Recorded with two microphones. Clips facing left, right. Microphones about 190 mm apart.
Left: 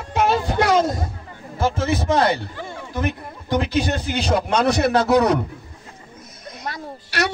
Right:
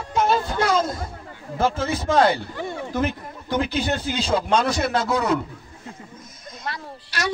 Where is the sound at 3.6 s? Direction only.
70° left (ahead or behind).